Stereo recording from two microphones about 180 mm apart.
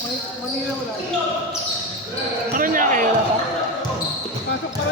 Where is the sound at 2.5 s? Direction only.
50° right (ahead or behind).